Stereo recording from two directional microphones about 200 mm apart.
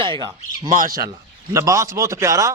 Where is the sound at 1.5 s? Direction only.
15° right (ahead or behind).